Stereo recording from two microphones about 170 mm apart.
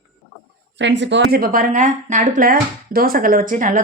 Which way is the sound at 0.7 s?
90° right.